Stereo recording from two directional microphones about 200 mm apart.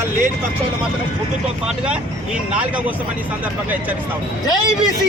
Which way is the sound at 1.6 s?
5° right (ahead or behind).